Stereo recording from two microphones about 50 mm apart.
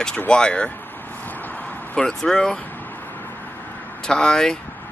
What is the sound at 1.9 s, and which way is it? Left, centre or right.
Speech, centre.